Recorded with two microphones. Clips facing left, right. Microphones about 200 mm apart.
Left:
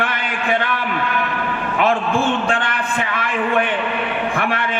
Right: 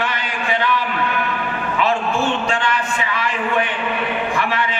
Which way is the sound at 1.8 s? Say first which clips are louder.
Left 2 dB; 55° left (ahead or behind).